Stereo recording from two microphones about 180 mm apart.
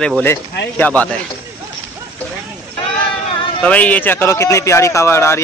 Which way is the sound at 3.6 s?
10° left (ahead or behind).